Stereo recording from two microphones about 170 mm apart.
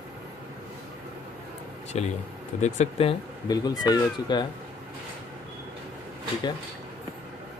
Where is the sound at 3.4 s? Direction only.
25° left (ahead or behind).